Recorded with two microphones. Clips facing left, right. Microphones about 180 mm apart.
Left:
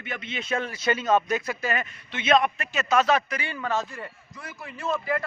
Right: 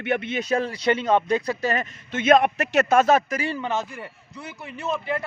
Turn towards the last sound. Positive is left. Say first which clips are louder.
# right 1 dB
turn(degrees=-20)  # may be behind; listen again after turning